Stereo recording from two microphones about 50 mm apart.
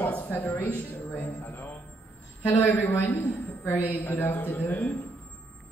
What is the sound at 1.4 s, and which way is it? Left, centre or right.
A man's voice, left.